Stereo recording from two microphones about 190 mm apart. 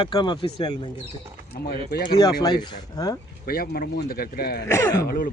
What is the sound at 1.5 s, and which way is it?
Speech, 55° left (ahead or behind).